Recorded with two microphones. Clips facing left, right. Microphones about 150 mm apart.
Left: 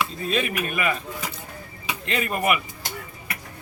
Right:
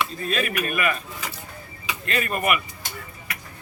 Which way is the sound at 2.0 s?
20° left (ahead or behind).